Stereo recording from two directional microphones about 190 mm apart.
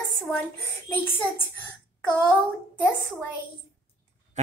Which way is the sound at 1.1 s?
10° left (ahead or behind).